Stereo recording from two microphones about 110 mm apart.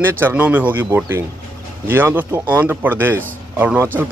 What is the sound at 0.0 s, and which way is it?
Speech, 20° right (ahead or behind).